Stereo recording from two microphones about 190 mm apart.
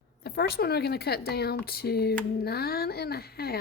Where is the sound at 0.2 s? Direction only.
55° left (ahead or behind).